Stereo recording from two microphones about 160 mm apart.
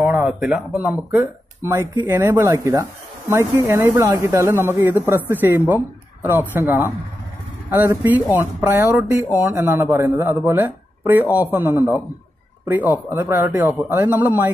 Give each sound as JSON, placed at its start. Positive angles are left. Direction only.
{"t": 0.0, "sound": "speech", "side_deg": -10}